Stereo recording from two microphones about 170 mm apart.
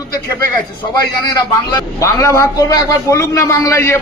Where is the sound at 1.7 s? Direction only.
20° left (ahead or behind).